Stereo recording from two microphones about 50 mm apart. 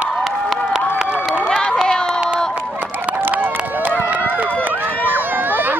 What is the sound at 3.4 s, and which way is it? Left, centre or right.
Run, right.